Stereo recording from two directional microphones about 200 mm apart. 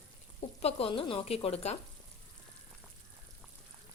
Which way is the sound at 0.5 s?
30° left (ahead or behind).